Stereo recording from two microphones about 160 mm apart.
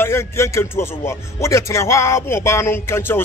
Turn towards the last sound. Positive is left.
turn(degrees=15)  # may be behind; listen again after turning